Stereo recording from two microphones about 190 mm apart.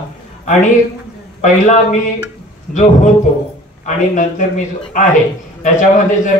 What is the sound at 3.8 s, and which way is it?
Speech, 40° left (ahead or behind).